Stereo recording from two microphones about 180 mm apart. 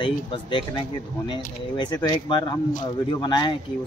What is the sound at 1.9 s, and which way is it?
Speech, 20° left (ahead or behind).